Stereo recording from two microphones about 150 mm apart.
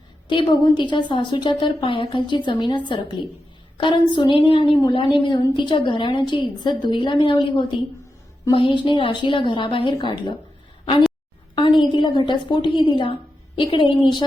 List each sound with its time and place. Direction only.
0.3 s a woman's voice: 30° left (ahead or behind)
11.8 s a woman's voice: 30° left (ahead or behind)